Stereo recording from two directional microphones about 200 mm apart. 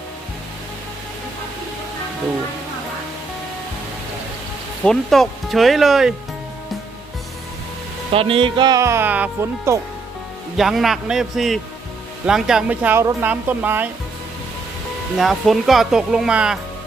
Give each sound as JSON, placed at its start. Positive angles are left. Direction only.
{"t": 4.9, "sound": "speech", "side_deg": 0}
{"t": 8.1, "sound": "speech", "side_deg": -25}
{"t": 10.6, "sound": "speech", "side_deg": 0}
{"t": 15.2, "sound": "speech", "side_deg": 0}